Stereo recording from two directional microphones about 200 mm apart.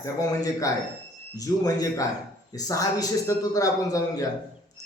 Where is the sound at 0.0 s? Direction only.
15° left (ahead or behind).